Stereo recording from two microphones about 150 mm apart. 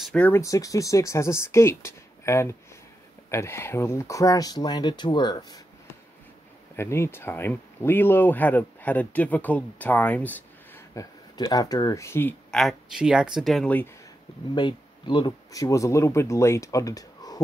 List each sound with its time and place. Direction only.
0.0 s speech: 10° left (ahead or behind)
0.4 s speech: 20° left (ahead or behind)
6.8 s speech: 15° left (ahead or behind)
11.0 s speech: 25° left (ahead or behind)
12.4 s speech: centre (ahead or behind)
14.5 s speech: 30° left (ahead or behind)